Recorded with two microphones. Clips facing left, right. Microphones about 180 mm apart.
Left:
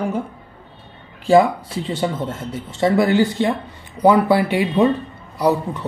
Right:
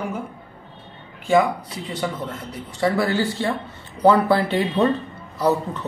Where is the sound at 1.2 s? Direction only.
30° left (ahead or behind).